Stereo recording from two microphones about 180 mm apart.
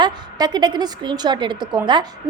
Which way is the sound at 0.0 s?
25° right (ahead or behind).